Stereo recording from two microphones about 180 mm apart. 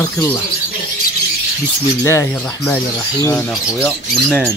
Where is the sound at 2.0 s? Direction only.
15° left (ahead or behind).